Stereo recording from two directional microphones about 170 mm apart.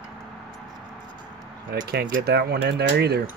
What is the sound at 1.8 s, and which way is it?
Speech, 60° right (ahead or behind).